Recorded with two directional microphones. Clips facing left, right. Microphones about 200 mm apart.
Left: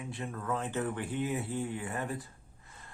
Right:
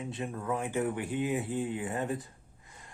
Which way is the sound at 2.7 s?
15° right (ahead or behind).